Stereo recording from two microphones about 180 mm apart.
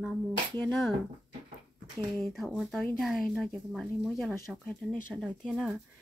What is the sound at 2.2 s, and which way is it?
A woman's voice, centre (ahead or behind).